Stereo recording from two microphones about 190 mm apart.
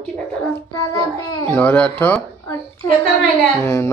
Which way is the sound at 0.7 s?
20° left (ahead or behind).